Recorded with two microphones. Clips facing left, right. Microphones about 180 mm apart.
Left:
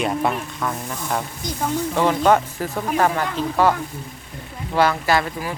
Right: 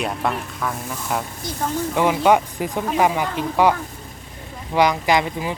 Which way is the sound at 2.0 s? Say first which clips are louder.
Right 1 dB; 10° right (ahead or behind).